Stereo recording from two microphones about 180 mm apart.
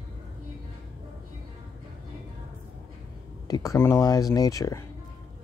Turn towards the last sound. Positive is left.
turn(degrees=20)  # may be behind; listen again after turning